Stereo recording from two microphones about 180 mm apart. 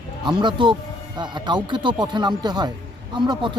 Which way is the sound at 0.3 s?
25° right (ahead or behind).